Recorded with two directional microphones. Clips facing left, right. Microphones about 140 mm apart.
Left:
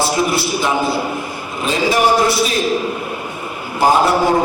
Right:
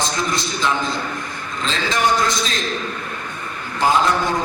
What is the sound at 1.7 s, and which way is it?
A man's voice, 10° left (ahead or behind).